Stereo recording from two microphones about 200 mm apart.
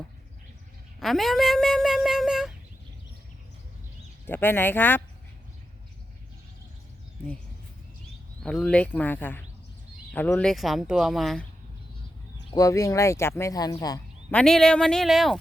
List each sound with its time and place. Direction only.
0.9 s speech: centre (ahead or behind)
4.3 s speech: 10° left (ahead or behind)
8.4 s speech: 5° left (ahead or behind)
12.5 s speech: 15° left (ahead or behind)
14.3 s speech: 5° left (ahead or behind)